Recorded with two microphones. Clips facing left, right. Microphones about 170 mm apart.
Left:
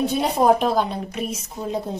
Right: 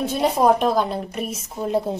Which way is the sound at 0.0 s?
Centre (ahead or behind).